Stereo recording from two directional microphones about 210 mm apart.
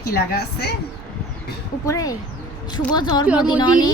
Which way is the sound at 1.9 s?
15° left (ahead or behind).